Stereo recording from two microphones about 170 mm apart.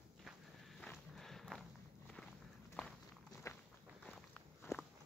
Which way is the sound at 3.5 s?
15° left (ahead or behind).